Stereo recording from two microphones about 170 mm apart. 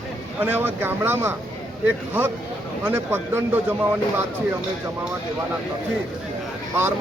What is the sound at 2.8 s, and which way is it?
Speech, 15° right (ahead or behind).